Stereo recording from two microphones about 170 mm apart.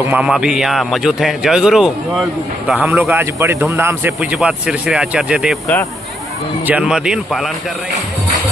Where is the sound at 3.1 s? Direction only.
15° right (ahead or behind).